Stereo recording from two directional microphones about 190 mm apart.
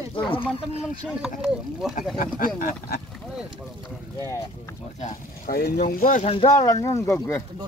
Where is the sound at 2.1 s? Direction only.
50° left (ahead or behind).